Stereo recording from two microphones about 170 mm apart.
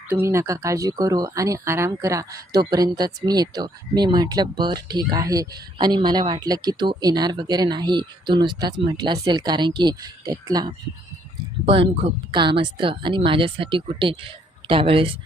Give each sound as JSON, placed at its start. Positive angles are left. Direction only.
{"t": 0.1, "sound": "speech", "side_deg": -15}
{"t": 11.6, "sound": "speech", "side_deg": -35}